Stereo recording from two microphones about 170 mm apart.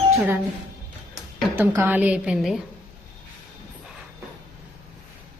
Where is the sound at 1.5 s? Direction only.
15° right (ahead or behind).